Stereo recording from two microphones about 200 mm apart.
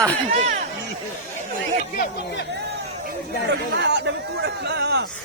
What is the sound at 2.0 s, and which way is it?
Speech, 60° left (ahead or behind).